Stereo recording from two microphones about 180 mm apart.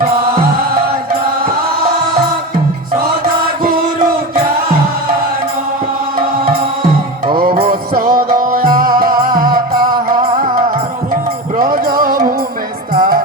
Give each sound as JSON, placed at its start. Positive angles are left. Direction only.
{"t": 7.3, "sound": "music", "side_deg": -55}
{"t": 11.1, "sound": "music", "side_deg": -50}